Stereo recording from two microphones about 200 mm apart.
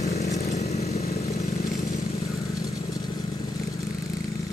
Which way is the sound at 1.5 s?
50° left (ahead or behind).